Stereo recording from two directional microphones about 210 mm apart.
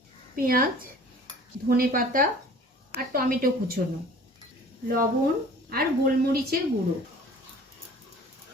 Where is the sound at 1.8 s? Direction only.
40° right (ahead or behind).